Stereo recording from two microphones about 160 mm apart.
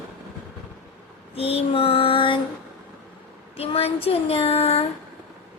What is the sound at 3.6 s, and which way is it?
Child singing, 40° left (ahead or behind).